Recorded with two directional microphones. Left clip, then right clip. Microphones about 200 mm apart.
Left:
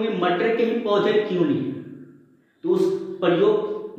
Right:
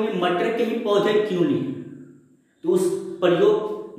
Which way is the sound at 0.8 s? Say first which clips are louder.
Right 3 dB; 10° right (ahead or behind).